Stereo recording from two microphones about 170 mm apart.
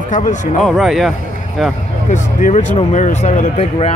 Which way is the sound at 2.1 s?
45° left (ahead or behind).